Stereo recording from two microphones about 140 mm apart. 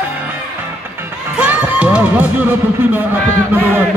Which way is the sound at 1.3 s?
10° right (ahead or behind).